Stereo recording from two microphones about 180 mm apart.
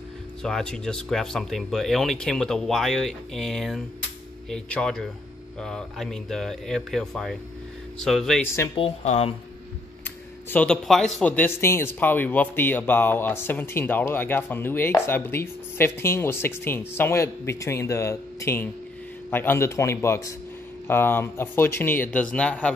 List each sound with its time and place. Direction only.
0.4 s speech: centre (ahead or behind)
8.7 s speech: 35° left (ahead or behind)
10.5 s speech: 5° left (ahead or behind)